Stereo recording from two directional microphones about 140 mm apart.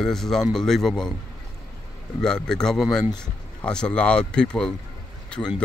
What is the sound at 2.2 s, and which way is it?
A man's voice, 5° left (ahead or behind).